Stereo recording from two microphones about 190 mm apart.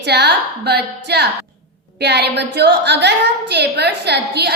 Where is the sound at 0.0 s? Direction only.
60° right (ahead or behind).